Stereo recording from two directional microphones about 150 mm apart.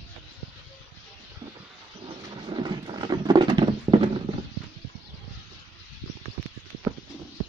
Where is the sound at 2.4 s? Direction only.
30° right (ahead or behind).